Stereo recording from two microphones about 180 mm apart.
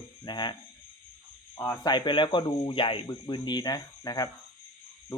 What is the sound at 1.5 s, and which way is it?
Speech, 10° left (ahead or behind).